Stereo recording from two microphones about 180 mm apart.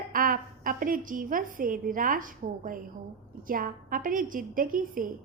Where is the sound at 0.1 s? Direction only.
50° right (ahead or behind).